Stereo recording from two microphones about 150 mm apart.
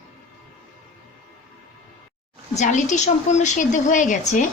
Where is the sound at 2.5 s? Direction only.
55° left (ahead or behind).